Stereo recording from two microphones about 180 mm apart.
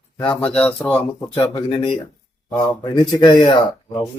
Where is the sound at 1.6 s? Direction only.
30° left (ahead or behind).